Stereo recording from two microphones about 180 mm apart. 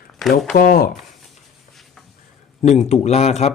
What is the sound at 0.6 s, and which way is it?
Speech, 55° left (ahead or behind).